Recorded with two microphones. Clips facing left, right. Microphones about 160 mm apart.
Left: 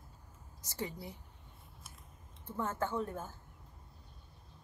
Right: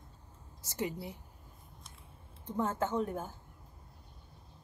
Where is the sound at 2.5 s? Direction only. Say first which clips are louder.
Right 3 dB; 15° right (ahead or behind).